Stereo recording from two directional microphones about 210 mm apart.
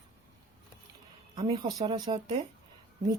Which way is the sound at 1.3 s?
25° right (ahead or behind).